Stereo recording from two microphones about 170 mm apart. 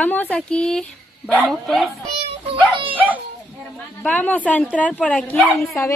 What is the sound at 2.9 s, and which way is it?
Dog, 10° right (ahead or behind).